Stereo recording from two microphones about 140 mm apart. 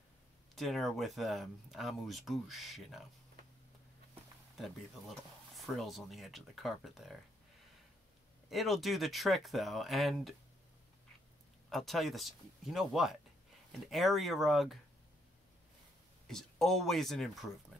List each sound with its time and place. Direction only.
0.6 s speech: centre (ahead or behind)
5.6 s speech: centre (ahead or behind)
8.5 s speech: centre (ahead or behind)
11.7 s speech: centre (ahead or behind)
16.3 s speech: 5° left (ahead or behind)